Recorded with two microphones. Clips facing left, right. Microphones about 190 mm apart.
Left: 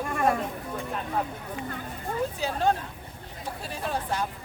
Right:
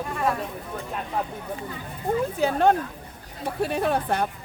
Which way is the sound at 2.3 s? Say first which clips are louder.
Right 7 dB; 60° right (ahead or behind).